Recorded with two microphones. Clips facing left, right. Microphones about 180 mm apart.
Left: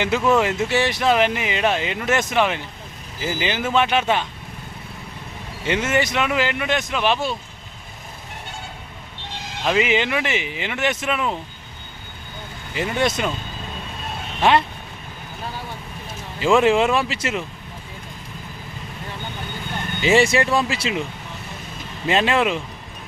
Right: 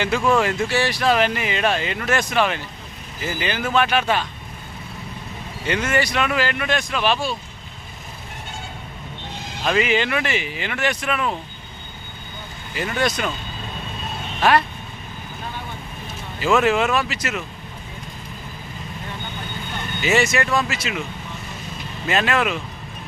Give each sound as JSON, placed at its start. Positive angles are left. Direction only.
{"t": 0.3, "sound": "speech", "side_deg": 20}
{"t": 5.6, "sound": "speech", "side_deg": 20}
{"t": 9.6, "sound": "speech", "side_deg": 15}
{"t": 12.7, "sound": "speech", "side_deg": 25}
{"t": 16.4, "sound": "speech", "side_deg": 25}
{"t": 20.0, "sound": "speech", "side_deg": 30}
{"t": 22.0, "sound": "speech", "side_deg": 25}